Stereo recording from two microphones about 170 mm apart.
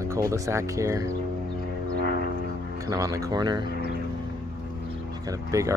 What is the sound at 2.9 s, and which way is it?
Speech, 20° right (ahead or behind).